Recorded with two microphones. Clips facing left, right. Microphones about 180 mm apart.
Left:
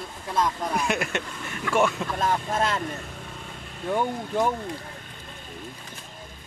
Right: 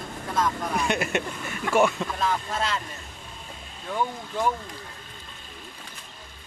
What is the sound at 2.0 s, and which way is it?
Vehicle, 5° left (ahead or behind).